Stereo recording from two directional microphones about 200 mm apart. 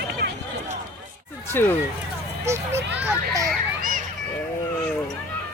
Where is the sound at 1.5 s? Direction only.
10° left (ahead or behind).